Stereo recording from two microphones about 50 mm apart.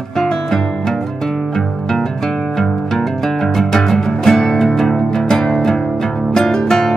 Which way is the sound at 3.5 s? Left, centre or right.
Centre.